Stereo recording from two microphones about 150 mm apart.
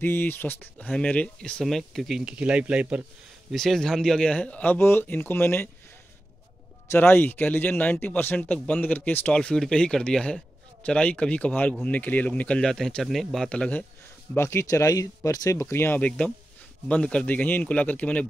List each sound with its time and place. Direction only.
0.0 s speech: 15° left (ahead or behind)
6.9 s speech: 15° left (ahead or behind)